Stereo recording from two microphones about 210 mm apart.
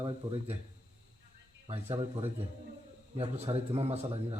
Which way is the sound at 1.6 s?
25° right (ahead or behind).